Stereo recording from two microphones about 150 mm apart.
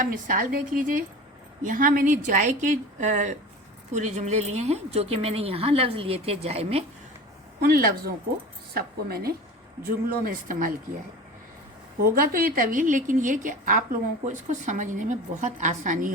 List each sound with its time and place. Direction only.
0.0 s a woman's voice: 60° right (ahead or behind); by 6.8 s 45° right (ahead or behind)
7.6 s a woman's voice: 90° right
9.8 s speech: 75° right (ahead or behind)
12.0 s a woman's voice: 80° right; by 16.1 s 60° right (ahead or behind)